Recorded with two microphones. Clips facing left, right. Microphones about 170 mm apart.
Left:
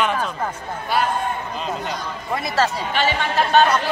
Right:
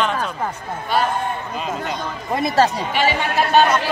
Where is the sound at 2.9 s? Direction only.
10° right (ahead or behind).